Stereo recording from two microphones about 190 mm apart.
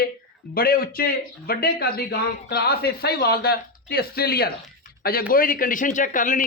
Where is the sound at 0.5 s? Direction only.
50° left (ahead or behind).